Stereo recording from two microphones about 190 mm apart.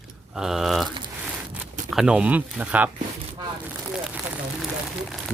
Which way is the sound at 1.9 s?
5° right (ahead or behind).